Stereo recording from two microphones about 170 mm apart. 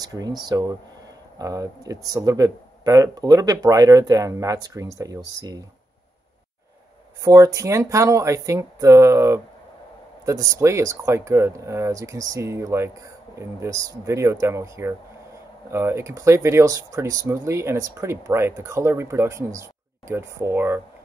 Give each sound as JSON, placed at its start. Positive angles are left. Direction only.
{"t": 0.0, "sound": "speech", "side_deg": -20}
{"t": 7.2, "sound": "speech", "side_deg": -20}